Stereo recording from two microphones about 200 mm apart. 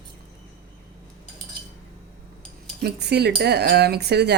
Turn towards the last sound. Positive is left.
turn(degrees=-55)  # may be behind; listen again after turning